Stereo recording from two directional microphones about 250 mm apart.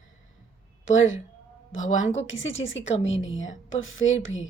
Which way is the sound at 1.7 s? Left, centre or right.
Left.